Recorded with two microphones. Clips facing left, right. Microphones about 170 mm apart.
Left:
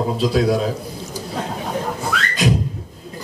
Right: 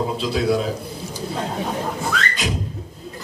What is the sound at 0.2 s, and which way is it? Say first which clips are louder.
Speech: left 4 dB; 45° left (ahead or behind).